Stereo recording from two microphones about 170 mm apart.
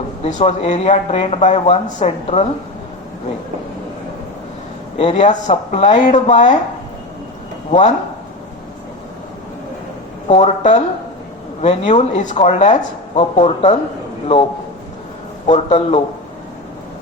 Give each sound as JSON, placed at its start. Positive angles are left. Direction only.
{"t": 0.3, "sound": "speech", "side_deg": 45}
{"t": 4.9, "sound": "speech", "side_deg": 40}
{"t": 7.7, "sound": "speech", "side_deg": 40}
{"t": 10.2, "sound": "speech", "side_deg": 40}
{"t": 15.4, "sound": "speech", "side_deg": 40}